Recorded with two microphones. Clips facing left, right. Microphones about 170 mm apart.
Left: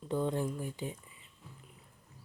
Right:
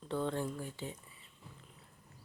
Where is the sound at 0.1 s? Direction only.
15° left (ahead or behind).